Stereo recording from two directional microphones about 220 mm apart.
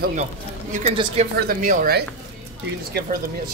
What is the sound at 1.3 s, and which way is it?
Speech, 40° right (ahead or behind).